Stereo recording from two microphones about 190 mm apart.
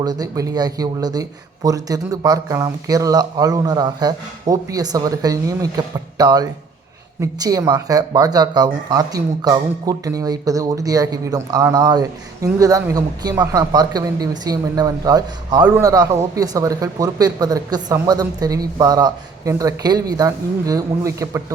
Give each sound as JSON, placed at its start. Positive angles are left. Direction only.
{"t": 0.0, "sound": "speech", "side_deg": -20}